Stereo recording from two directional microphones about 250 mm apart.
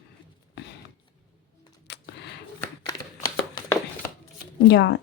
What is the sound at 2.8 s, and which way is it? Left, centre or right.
Shuffling cards, centre.